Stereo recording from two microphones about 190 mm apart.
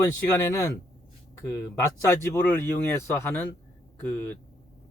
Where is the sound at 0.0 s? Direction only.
15° left (ahead or behind).